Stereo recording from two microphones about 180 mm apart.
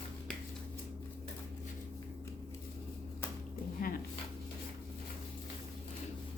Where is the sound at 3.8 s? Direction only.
50° left (ahead or behind).